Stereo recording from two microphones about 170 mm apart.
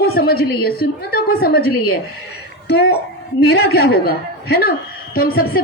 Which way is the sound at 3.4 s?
70° left (ahead or behind).